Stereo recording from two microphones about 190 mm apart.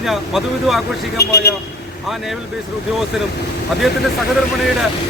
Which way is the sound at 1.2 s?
60° left (ahead or behind).